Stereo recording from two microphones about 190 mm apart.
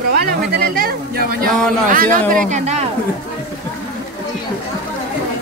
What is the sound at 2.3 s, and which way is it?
Speech, 40° right (ahead or behind).